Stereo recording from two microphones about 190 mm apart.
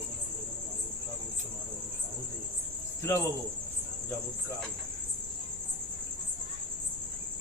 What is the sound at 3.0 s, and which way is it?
Speech, 15° left (ahead or behind).